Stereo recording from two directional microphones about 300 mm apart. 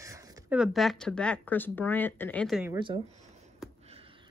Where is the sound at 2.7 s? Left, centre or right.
Centre.